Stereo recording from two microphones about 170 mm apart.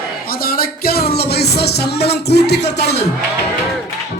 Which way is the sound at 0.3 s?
60° left (ahead or behind).